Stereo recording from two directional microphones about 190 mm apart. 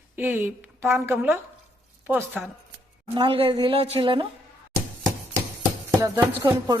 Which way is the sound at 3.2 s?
30° right (ahead or behind).